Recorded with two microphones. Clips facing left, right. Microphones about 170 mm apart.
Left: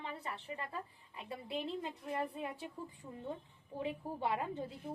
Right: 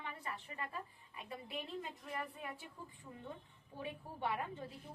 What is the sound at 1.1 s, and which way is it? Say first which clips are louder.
A woman's voice: left 5 dB; 30° left (ahead or behind).